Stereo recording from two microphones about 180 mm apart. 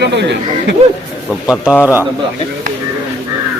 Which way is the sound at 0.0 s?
70° right (ahead or behind).